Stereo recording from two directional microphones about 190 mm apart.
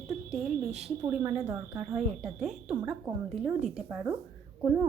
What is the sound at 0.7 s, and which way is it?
Speech, 35° right (ahead or behind).